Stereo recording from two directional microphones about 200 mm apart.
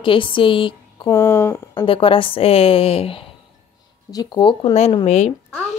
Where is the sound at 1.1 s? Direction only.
10° left (ahead or behind).